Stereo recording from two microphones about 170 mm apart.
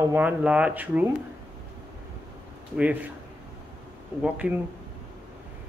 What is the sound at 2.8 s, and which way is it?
Speech, 10° right (ahead or behind).